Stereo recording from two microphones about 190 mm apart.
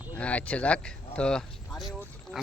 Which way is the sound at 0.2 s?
5° left (ahead or behind).